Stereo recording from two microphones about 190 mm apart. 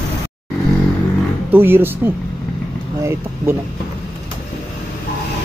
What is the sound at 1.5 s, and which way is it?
Speech, 10° right (ahead or behind).